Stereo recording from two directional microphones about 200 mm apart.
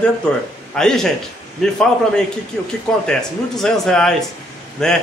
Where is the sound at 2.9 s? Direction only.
5° left (ahead or behind).